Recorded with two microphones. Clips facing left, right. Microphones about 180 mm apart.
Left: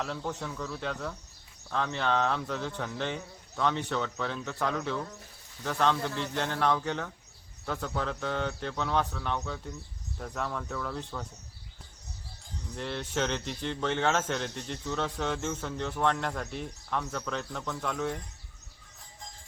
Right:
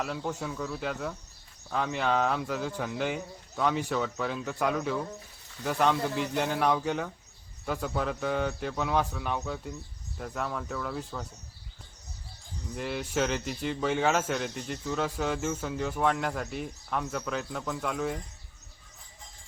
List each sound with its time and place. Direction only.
0.0 s speech: 5° right (ahead or behind)
12.7 s speech: 5° right (ahead or behind)